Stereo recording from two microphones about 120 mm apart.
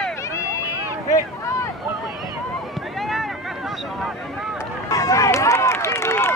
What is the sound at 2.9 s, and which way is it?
Boat, centre (ahead or behind).